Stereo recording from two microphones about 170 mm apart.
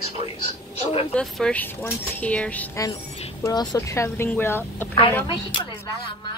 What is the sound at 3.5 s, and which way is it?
Speech, 20° left (ahead or behind).